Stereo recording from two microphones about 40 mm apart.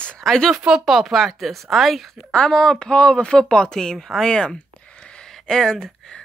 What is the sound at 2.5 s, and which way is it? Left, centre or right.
Speech, centre.